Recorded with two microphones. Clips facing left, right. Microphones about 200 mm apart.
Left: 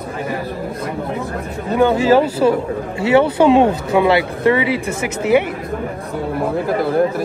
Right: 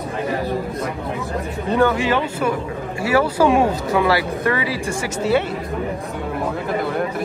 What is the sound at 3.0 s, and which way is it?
Speech, 25° left (ahead or behind).